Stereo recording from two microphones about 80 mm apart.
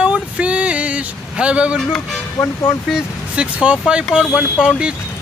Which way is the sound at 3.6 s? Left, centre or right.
Centre.